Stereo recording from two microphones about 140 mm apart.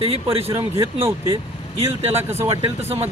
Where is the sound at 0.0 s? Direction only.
45° right (ahead or behind).